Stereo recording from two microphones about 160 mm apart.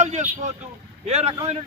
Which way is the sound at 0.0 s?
45° right (ahead or behind).